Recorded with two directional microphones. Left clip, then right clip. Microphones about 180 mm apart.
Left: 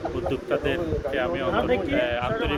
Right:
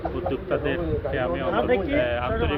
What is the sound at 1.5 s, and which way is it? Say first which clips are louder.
Speech: right 3 dB; 15° right (ahead or behind).